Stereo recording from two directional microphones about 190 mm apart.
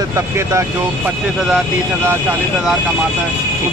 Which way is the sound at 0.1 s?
15° right (ahead or behind).